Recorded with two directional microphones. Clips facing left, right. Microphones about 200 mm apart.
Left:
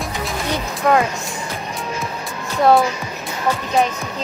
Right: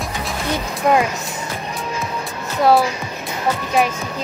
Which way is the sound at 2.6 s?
Centre (ahead or behind).